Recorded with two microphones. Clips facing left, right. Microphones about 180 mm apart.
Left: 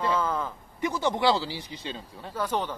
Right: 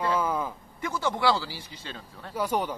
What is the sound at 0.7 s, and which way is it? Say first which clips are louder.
Speech: left 3 dB; 20° left (ahead or behind).